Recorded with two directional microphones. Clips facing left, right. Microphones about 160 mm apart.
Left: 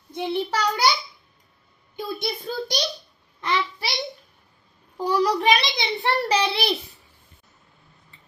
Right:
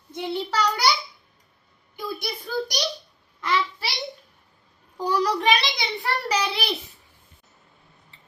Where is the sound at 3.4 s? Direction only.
15° left (ahead or behind).